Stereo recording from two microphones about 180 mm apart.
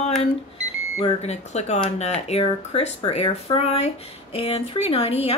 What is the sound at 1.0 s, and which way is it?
Speech, 35° left (ahead or behind).